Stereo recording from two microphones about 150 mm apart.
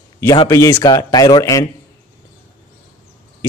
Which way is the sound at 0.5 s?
15° left (ahead or behind).